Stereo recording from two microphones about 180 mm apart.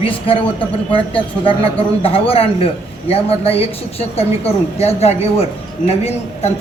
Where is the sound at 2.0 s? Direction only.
30° left (ahead or behind).